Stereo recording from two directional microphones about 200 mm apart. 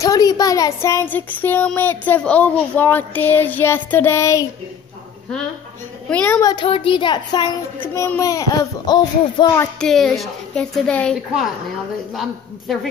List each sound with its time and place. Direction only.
0.0 s speech: 20° left (ahead or behind)
6.0 s speech: 5° left (ahead or behind)
6.5 s a child's voice: 25° left (ahead or behind)
7.8 s speech: 10° left (ahead or behind)
9.8 s a woman's voice: centre (ahead or behind)